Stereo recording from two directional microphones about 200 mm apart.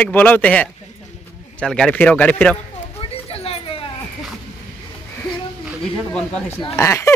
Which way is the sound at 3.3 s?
30° left (ahead or behind).